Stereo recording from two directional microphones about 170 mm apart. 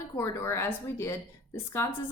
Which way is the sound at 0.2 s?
15° left (ahead or behind).